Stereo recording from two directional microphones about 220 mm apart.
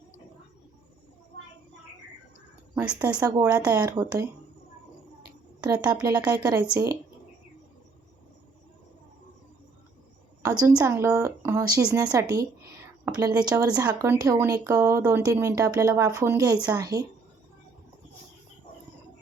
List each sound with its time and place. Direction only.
2.7 s speech: 15° right (ahead or behind)
5.5 s speech: 20° right (ahead or behind)
10.8 s speech: 10° right (ahead or behind)
12.0 s speech: 20° right (ahead or behind)